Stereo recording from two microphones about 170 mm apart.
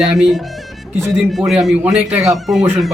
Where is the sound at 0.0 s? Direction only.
5° right (ahead or behind).